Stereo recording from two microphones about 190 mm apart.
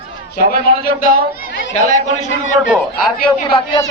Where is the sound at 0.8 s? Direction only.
50° left (ahead or behind).